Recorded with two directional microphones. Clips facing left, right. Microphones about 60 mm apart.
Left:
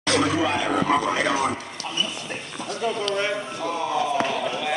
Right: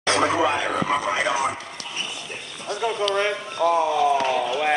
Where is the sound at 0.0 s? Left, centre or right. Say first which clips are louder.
Right 1 dB; right.